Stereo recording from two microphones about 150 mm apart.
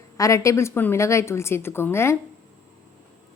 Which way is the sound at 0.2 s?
20° left (ahead or behind).